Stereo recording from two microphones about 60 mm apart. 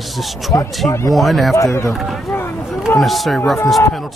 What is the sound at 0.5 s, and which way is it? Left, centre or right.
Speech, left.